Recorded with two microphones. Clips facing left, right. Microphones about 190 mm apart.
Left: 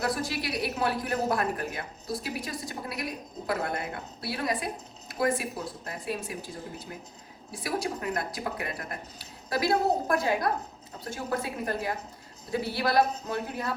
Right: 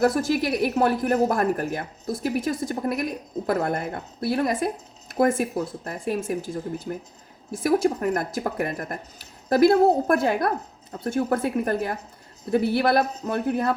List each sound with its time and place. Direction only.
0.0 s a woman's voice: 50° right (ahead or behind)
7.5 s a woman's voice: 50° right (ahead or behind)